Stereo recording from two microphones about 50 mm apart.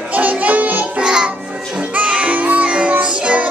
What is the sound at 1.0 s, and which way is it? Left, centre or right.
Music, centre.